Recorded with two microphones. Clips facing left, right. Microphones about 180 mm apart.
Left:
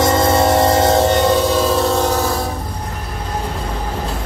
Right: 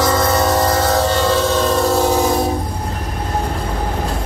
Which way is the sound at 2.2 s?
25° right (ahead or behind).